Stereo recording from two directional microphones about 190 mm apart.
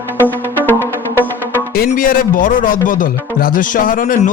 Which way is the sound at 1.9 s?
45° left (ahead or behind).